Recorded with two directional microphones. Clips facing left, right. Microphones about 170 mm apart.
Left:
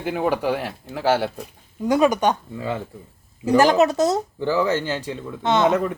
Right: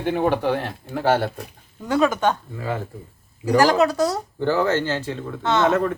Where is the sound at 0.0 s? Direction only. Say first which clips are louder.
Right 2 dB; 5° left (ahead or behind).